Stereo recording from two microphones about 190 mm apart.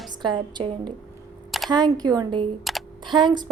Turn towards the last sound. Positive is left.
turn(degrees=-25)  # may be behind; listen again after turning